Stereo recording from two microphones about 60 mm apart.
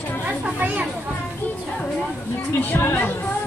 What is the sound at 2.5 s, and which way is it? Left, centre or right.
Speech, left.